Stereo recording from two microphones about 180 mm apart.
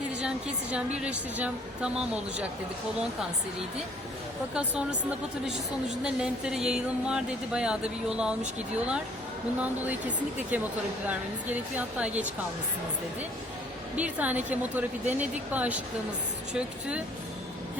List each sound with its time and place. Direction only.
0.2 s speech: 5° right (ahead or behind)
4.5 s speech: 5° right (ahead or behind)
6.0 s speech: 5° right (ahead or behind)
9.6 s speech: 10° right (ahead or behind)
13.9 s speech: 10° right (ahead or behind)